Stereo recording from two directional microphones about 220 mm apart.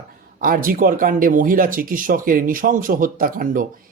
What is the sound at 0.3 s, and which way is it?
Speech, 40° right (ahead or behind).